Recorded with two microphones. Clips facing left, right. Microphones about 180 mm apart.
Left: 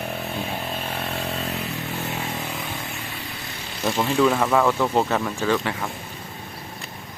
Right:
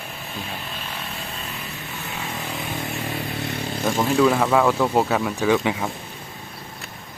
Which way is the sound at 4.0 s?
Centre (ahead or behind).